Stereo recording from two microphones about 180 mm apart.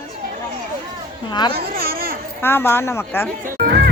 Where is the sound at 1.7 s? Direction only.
55° right (ahead or behind).